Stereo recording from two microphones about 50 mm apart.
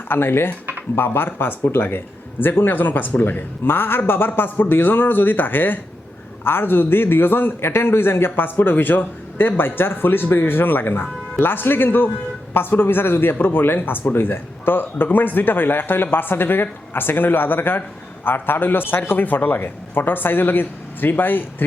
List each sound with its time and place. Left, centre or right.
0.1 s a man's voice: left